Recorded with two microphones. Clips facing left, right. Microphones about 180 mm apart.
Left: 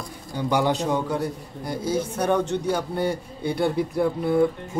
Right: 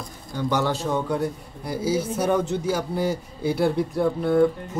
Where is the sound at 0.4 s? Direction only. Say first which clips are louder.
Left 2 dB; 15° left (ahead or behind).